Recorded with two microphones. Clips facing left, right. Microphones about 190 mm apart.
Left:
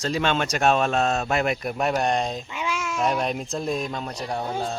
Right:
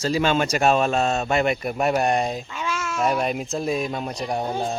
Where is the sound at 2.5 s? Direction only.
15° left (ahead or behind).